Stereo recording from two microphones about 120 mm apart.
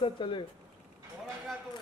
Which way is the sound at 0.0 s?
45° left (ahead or behind).